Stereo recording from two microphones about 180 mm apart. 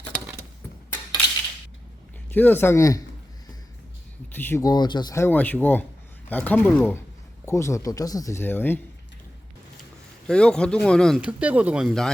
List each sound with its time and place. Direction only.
2.3 s speech: 10° left (ahead or behind)
4.4 s speech: 15° left (ahead or behind)
10.2 s speech: 5° left (ahead or behind)